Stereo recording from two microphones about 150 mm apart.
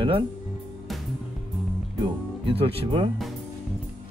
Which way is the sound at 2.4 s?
35° right (ahead or behind).